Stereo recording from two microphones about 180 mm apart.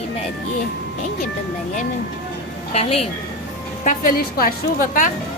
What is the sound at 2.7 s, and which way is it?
Speech, 35° left (ahead or behind).